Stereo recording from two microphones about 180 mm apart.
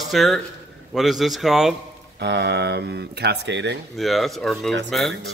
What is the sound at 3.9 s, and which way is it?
Speech, centre (ahead or behind).